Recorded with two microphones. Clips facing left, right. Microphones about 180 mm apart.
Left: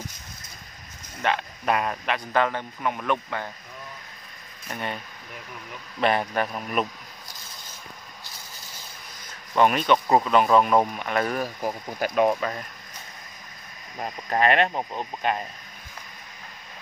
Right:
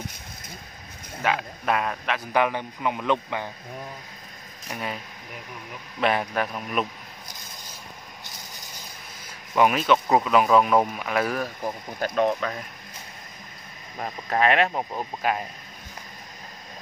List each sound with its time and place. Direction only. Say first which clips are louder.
1.2 s speech: even; centre (ahead or behind)
2.3 s speech: right 1 dB; 15° right (ahead or behind)
4.6 s speech: even; 5° right (ahead or behind)
9.6 s speech: even; 5° right (ahead or behind)
11.4 s speech: left 2 dB; 10° left (ahead or behind)
14.0 s speech: even; centre (ahead or behind)